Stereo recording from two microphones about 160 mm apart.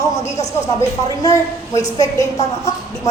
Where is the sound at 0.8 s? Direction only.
20° left (ahead or behind).